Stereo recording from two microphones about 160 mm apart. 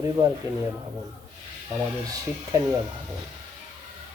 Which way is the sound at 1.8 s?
20° right (ahead or behind).